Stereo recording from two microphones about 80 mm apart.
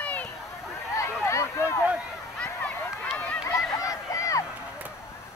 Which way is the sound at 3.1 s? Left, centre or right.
Centre.